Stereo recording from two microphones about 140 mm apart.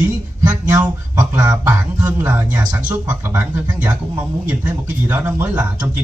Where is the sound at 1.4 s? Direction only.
15° right (ahead or behind).